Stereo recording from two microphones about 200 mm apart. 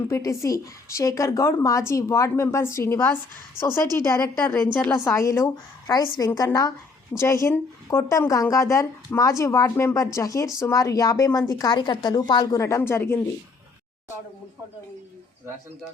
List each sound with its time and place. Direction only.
0.1 s speech: 15° left (ahead or behind)